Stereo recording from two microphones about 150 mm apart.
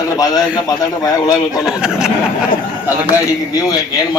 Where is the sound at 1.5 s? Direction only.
5° right (ahead or behind).